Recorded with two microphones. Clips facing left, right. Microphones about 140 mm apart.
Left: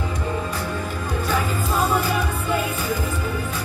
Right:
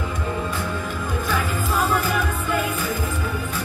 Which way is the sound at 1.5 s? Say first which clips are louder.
Right 1 dB; 35° left (ahead or behind).